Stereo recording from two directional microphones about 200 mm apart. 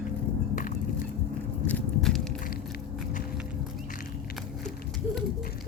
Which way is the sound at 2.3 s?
45° left (ahead or behind).